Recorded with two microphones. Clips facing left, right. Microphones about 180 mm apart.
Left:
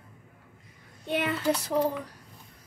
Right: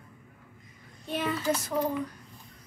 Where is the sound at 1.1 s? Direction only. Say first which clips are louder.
Left 2 dB; 70° left (ahead or behind).